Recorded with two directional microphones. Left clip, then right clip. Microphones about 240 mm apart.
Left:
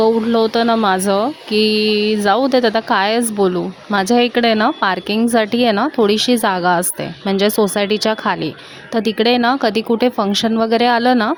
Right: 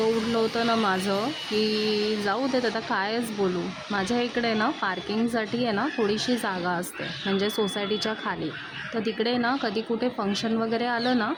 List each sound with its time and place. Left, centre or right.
0.0 s speech: left